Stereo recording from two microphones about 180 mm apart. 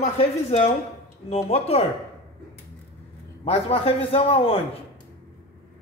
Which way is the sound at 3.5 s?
35° left (ahead or behind).